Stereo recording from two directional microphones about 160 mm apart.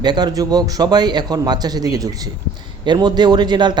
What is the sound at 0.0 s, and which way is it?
A man's voice, 25° right (ahead or behind).